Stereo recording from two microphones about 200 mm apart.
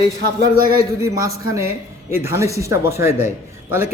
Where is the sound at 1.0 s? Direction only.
15° right (ahead or behind).